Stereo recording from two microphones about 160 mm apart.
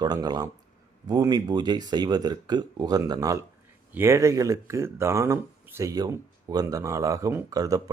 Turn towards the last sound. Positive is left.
turn(degrees=-20)  # may be behind; listen again after turning